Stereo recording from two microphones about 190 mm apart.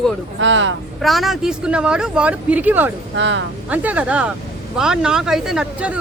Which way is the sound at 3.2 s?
70° right (ahead or behind).